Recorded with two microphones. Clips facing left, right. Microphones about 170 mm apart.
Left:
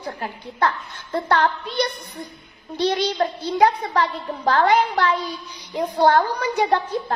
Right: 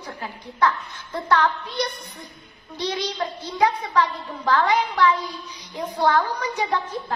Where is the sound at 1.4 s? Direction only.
60° left (ahead or behind).